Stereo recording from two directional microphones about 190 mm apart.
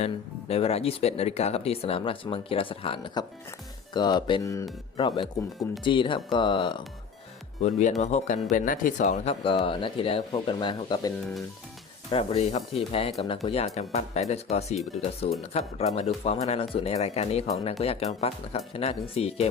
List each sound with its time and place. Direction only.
0.0 s speech: 35° left (ahead or behind)
7.6 s speech: 40° left (ahead or behind)
12.1 s speech: 30° left (ahead or behind)